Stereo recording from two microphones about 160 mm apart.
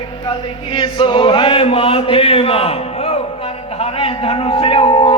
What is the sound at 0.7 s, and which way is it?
Chant, 30° left (ahead or behind).